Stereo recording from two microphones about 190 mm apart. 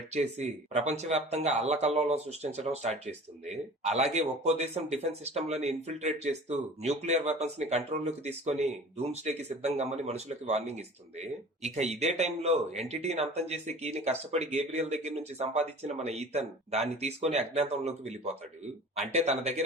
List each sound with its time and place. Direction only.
0.1 s speech: 35° right (ahead or behind)